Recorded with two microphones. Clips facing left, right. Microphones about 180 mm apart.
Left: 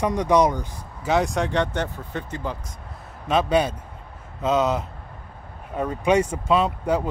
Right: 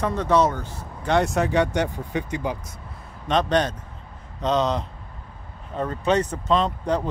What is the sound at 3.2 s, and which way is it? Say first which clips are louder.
Speech: left 1 dB; 5° left (ahead or behind).